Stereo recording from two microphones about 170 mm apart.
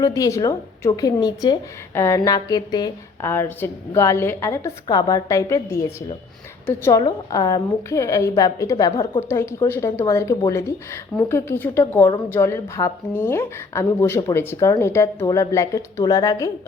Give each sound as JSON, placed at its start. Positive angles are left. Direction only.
{"t": 0.0, "sound": "a woman's voice", "side_deg": 20}